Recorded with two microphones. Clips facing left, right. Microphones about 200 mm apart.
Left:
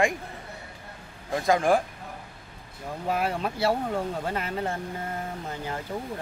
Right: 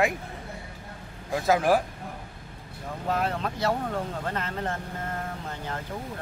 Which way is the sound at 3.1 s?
10° left (ahead or behind).